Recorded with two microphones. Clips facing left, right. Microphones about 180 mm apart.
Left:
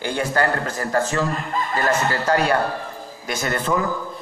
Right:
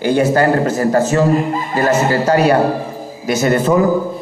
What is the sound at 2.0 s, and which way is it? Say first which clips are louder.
Speech: right 8 dB; 40° right (ahead or behind).